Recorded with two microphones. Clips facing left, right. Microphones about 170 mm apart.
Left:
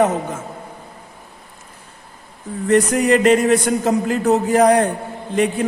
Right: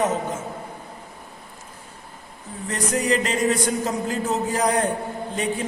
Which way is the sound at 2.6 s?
65° left (ahead or behind).